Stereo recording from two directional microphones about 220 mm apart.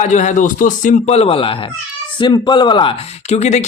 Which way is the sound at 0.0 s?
30° left (ahead or behind).